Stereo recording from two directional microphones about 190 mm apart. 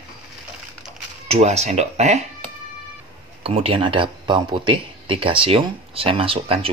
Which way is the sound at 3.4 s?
30° right (ahead or behind).